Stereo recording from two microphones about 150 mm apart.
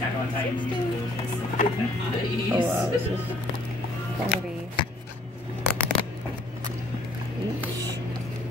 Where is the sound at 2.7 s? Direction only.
15° right (ahead or behind).